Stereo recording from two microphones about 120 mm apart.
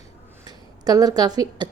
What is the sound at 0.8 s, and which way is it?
Speech, 30° right (ahead or behind).